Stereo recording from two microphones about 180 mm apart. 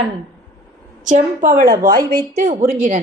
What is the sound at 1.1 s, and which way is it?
A woman's voice, 45° right (ahead or behind).